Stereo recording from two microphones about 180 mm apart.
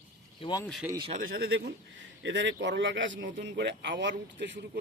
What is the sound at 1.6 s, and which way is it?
Speech, 90° right.